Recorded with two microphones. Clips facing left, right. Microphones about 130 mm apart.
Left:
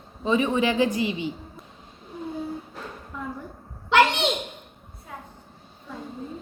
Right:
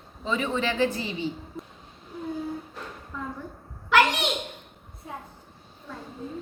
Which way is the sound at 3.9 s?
25° left (ahead or behind).